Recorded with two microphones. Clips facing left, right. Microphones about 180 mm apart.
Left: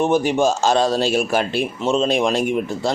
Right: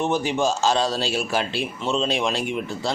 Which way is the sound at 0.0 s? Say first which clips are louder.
Left 5 dB; 50° left (ahead or behind).